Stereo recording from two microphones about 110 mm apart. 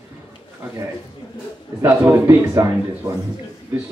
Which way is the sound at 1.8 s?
20° right (ahead or behind).